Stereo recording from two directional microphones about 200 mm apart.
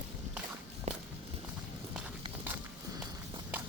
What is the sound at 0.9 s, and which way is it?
Walk, 35° right (ahead or behind).